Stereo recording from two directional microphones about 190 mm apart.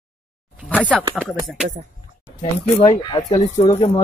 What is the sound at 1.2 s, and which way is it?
Speech, 5° right (ahead or behind).